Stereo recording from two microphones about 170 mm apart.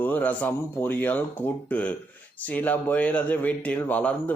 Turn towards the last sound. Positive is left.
turn(degrees=10)  # may be behind; listen again after turning